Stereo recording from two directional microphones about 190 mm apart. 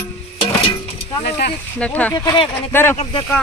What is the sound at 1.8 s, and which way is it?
Speech, 10° left (ahead or behind).